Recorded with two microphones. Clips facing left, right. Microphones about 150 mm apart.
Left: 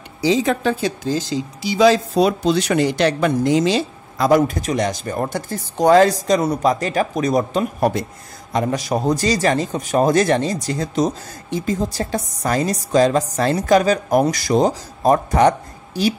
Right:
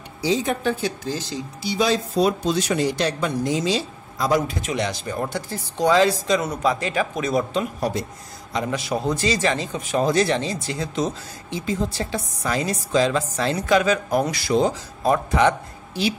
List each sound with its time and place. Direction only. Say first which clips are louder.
0.2 s speech: left 5 dB; 90° left; by 16.2 s 40° left (ahead or behind)